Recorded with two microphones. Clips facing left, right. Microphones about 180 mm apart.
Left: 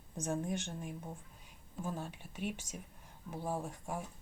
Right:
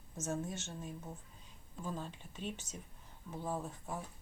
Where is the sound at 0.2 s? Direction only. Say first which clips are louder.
Left 3 dB; 15° left (ahead or behind).